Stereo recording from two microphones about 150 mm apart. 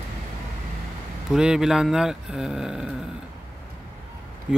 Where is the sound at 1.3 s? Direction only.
5° right (ahead or behind).